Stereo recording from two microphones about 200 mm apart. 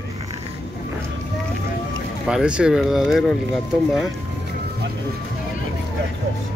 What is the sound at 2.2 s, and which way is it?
Speech, 5° right (ahead or behind).